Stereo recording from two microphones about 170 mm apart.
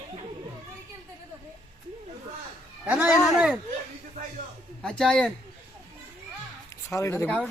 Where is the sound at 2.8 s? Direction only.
5° right (ahead or behind).